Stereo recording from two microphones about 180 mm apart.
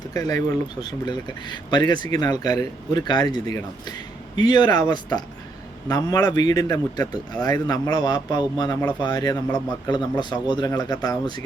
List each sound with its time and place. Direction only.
0.1 s speech: 20° left (ahead or behind)